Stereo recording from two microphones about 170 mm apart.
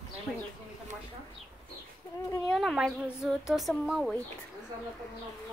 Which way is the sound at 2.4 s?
Centre (ahead or behind).